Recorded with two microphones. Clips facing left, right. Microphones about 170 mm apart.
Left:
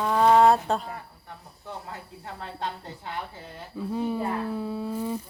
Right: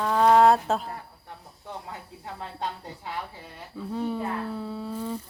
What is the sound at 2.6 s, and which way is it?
Speech, 15° right (ahead or behind).